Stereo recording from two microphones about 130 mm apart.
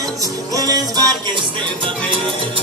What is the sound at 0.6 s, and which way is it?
Music, 30° right (ahead or behind).